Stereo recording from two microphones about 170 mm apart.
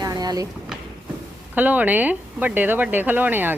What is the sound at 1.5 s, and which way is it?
Speech, 10° right (ahead or behind).